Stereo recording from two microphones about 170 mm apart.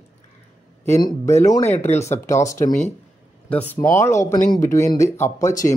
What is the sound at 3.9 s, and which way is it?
Speech, 15° left (ahead or behind).